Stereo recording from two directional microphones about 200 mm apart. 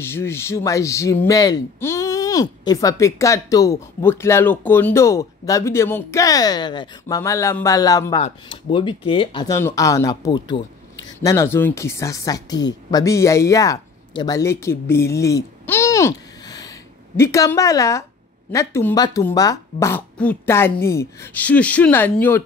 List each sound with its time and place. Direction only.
0.0 s speech: 10° left (ahead or behind)